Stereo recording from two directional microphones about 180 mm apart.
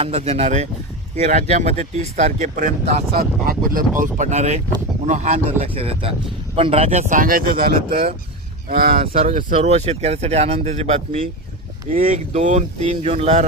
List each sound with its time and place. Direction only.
0.0 s speech: 35° right (ahead or behind); by 9.0 s 55° right (ahead or behind)
9.1 s speech: 35° right (ahead or behind)
11.9 s speech: 45° right (ahead or behind)